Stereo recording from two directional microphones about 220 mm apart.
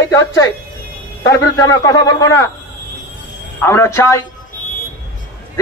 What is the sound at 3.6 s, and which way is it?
Speech, 10° left (ahead or behind).